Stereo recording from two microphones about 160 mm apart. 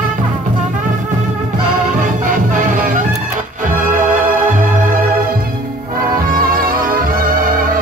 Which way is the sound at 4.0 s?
55° right (ahead or behind).